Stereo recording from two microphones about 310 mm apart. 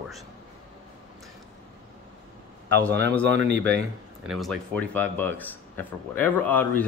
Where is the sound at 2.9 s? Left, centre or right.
Right.